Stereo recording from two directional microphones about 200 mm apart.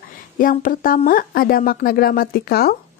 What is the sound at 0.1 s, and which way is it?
A woman's voice, 45° left (ahead or behind).